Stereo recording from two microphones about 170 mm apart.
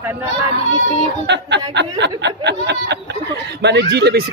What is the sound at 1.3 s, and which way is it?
Speech, 90° right.